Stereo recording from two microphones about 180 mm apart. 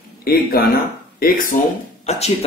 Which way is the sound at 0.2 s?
55° left (ahead or behind).